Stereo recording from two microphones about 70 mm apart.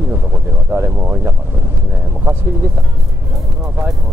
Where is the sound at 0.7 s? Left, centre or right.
Right.